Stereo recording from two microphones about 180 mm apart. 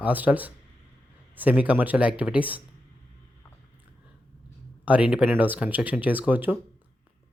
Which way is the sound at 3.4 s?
20° left (ahead or behind).